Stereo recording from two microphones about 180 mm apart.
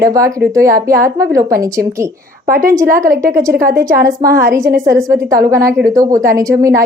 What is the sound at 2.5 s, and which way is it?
Speech, 50° right (ahead or behind).